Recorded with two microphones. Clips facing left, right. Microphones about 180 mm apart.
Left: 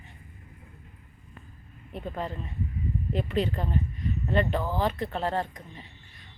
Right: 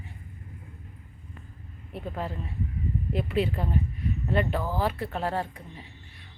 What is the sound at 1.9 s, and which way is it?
Speech, 5° right (ahead or behind).